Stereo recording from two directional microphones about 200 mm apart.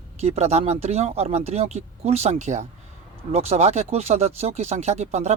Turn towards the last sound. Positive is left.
turn(degrees=-35)  # may be behind; listen again after turning